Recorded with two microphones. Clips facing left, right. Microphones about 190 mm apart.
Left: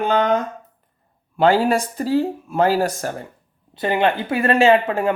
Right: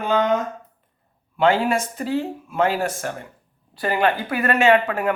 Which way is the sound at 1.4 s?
35° left (ahead or behind).